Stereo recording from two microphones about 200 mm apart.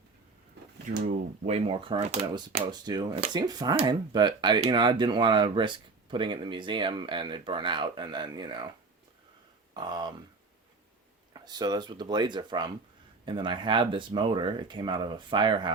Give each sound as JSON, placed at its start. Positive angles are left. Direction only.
{"t": 1.5, "sound": "speech", "side_deg": -30}
{"t": 9.7, "sound": "speech", "side_deg": -20}
{"t": 11.3, "sound": "speech", "side_deg": -20}